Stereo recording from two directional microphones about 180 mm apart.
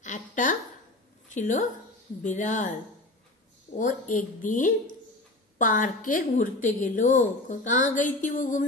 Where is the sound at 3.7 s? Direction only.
45° left (ahead or behind).